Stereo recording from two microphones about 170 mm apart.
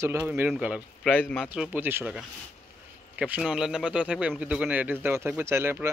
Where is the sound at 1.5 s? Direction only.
10° right (ahead or behind).